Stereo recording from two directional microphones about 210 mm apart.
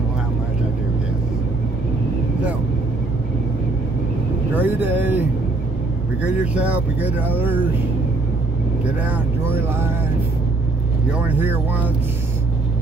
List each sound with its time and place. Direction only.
4.6 s vehicle: 10° right (ahead or behind)
6.2 s speech: 5° right (ahead or behind)
9.0 s speech: 10° right (ahead or behind)
11.1 s speech: 10° right (ahead or behind)